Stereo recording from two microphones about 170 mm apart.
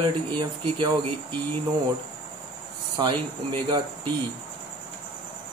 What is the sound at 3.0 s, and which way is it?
Speech, 30° right (ahead or behind).